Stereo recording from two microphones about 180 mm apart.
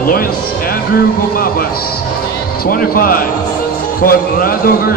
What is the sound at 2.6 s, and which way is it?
A man's voice, 55° left (ahead or behind).